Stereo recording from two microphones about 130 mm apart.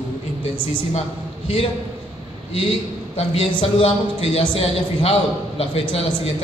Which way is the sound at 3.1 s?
45° left (ahead or behind).